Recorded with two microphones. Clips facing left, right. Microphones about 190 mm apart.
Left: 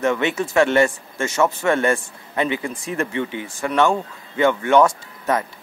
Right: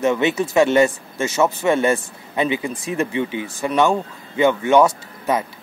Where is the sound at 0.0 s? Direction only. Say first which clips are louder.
Right 2 dB; 20° right (ahead or behind).